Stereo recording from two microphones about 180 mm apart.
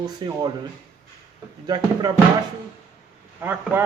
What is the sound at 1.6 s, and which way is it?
Speech, 25° right (ahead or behind).